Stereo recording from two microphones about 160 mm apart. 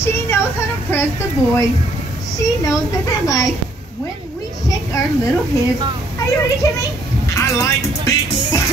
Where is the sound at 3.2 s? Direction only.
20° left (ahead or behind).